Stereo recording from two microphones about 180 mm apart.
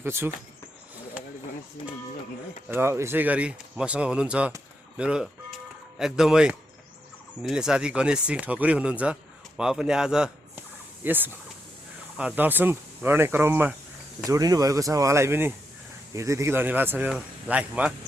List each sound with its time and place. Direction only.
0.0 s speech: 15° right (ahead or behind)
2.6 s a man's voice: 10° right (ahead or behind)